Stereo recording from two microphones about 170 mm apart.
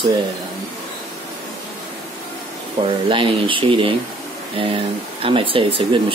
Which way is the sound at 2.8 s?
30° right (ahead or behind).